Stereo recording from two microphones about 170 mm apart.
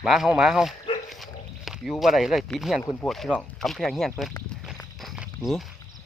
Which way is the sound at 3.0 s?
Centre (ahead or behind).